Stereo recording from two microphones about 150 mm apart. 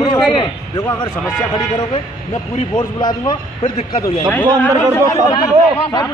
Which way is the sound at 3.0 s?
30° left (ahead or behind).